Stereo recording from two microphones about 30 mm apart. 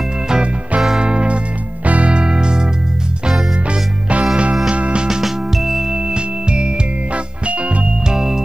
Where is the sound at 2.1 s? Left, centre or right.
Right.